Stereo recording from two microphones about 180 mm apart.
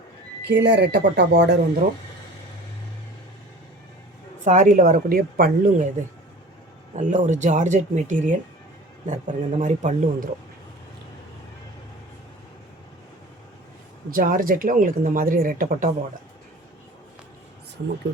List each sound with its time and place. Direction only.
0.4 s speech: 70° right (ahead or behind)
4.4 s speech: 45° right (ahead or behind)
6.9 s speech: 40° right (ahead or behind)
14.1 s speech: 50° right (ahead or behind)